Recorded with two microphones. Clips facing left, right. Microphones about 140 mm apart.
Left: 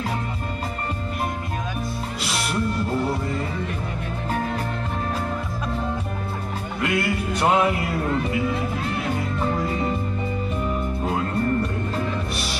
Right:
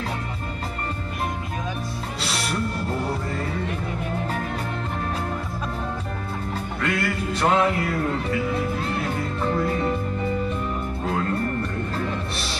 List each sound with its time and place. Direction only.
6.8 s music: 15° left (ahead or behind)